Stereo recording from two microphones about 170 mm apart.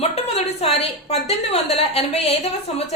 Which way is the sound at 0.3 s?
35° left (ahead or behind).